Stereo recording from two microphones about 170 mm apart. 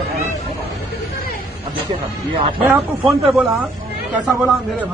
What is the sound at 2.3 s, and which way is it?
Speech, 30° right (ahead or behind).